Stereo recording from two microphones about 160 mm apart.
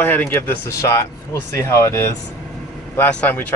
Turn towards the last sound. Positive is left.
turn(degrees=10)  # may be behind; listen again after turning